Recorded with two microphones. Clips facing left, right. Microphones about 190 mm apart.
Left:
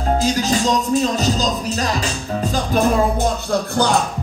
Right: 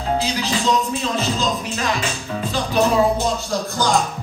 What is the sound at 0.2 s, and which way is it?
Music, 45° left (ahead or behind).